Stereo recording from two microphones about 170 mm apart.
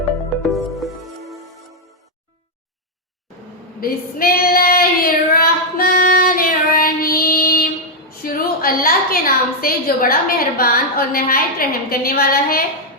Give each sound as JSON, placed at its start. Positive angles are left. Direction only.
{"t": 0.5, "sound": "music", "side_deg": 0}
{"t": 3.8, "sound": "child singing", "side_deg": 60}
{"t": 8.2, "sound": "a woman's voice", "side_deg": 60}